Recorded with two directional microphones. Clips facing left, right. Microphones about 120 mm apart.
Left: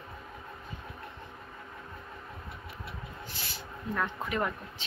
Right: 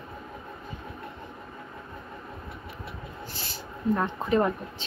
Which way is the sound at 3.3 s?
30° right (ahead or behind).